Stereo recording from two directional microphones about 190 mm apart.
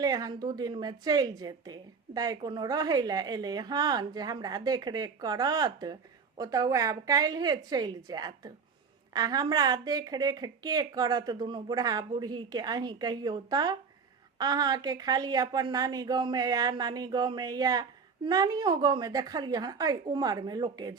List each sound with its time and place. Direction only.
0.0 s a woman's voice: 20° right (ahead or behind)